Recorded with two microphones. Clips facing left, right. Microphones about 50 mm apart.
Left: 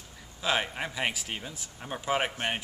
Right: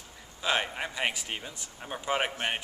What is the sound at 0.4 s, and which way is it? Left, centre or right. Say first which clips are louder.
A man's voice: even; centre.